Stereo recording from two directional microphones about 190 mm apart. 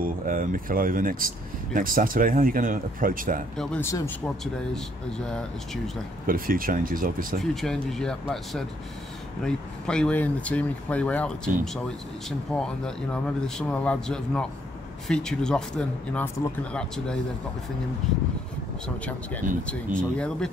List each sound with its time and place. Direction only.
0.0 s speech: 45° right (ahead or behind)
3.5 s speech: 5° left (ahead or behind)
5.2 s speech: 5° left (ahead or behind)
6.2 s speech: 50° right (ahead or behind)
7.6 s speech: 5° left (ahead or behind)
20.0 s speech: 5° left (ahead or behind)